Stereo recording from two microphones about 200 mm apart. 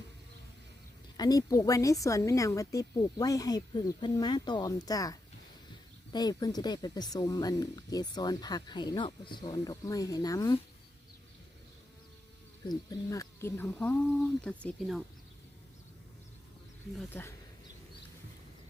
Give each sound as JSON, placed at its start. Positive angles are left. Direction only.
{"t": 1.1, "sound": "a woman's voice", "side_deg": 20}
{"t": 6.1, "sound": "speech", "side_deg": 20}
{"t": 12.6, "sound": "a woman's voice", "side_deg": 15}